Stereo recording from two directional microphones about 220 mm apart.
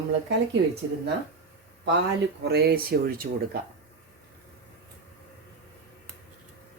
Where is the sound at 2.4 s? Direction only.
50° right (ahead or behind).